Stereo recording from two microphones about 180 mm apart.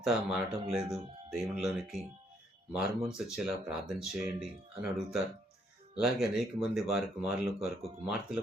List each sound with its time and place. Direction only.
0.0 s speech: 5° right (ahead or behind)
6.0 s speech: centre (ahead or behind)